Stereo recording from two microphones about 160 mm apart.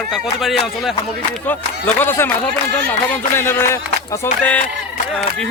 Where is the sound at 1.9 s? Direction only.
15° left (ahead or behind).